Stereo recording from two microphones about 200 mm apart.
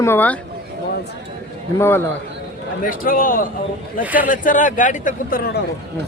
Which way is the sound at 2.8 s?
45° left (ahead or behind).